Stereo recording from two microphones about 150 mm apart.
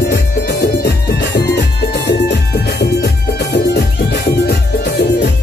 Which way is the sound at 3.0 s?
90° left.